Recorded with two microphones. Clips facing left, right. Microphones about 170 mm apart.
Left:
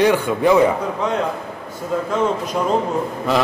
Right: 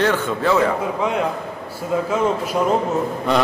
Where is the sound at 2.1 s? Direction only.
5° right (ahead or behind).